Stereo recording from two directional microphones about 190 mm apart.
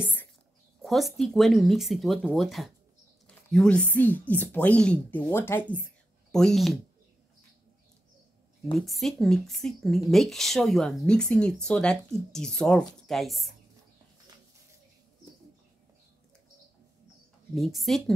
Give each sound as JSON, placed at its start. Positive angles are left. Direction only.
{"t": 0.8, "sound": "speech", "side_deg": 0}
{"t": 8.7, "sound": "speech", "side_deg": 0}
{"t": 17.6, "sound": "speech", "side_deg": 0}